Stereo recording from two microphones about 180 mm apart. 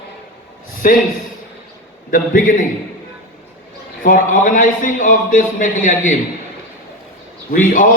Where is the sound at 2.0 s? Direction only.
50° left (ahead or behind).